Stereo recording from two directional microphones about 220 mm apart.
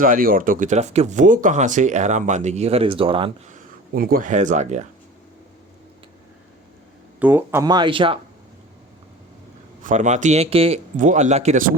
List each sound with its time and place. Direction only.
0.0 s speech: 40° right (ahead or behind)
3.9 s speech: 40° right (ahead or behind)
7.2 s speech: 10° right (ahead or behind)
9.8 s speech: 35° right (ahead or behind)